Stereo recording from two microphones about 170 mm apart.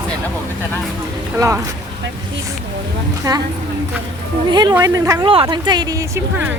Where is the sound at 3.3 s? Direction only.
20° right (ahead or behind).